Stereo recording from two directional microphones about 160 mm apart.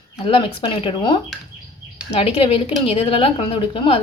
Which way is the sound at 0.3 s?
30° left (ahead or behind).